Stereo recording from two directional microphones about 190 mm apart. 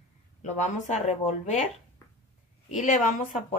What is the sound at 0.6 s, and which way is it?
Speech, 40° left (ahead or behind).